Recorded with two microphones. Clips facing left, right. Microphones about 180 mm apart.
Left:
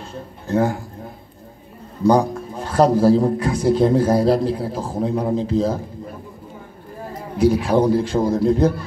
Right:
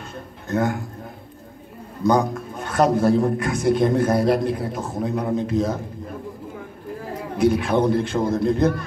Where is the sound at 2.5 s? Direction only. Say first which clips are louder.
Left 3 dB; 30° left (ahead or behind).